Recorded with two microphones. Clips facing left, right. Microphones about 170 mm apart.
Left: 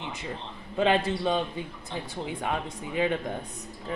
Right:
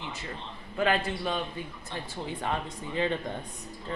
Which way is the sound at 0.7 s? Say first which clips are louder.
Left 3 dB; 20° left (ahead or behind).